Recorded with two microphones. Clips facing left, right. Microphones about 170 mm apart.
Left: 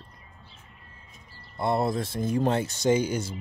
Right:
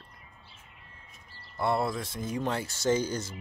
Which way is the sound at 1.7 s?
20° left (ahead or behind).